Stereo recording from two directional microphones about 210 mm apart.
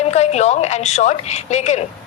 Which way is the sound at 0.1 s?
30° left (ahead or behind).